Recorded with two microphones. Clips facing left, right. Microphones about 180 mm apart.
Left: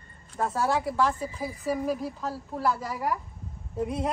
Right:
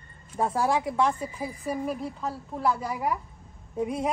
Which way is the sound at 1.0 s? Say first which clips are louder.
Right 1 dB; centre (ahead or behind).